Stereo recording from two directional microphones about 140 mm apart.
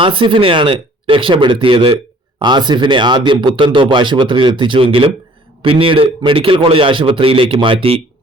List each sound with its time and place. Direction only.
0.0 s speech: 35° right (ahead or behind)